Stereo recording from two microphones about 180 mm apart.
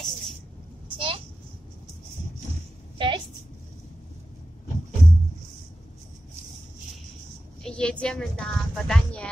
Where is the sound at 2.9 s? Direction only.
25° right (ahead or behind).